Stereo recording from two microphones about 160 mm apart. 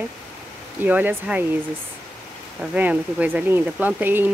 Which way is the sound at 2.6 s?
10° right (ahead or behind).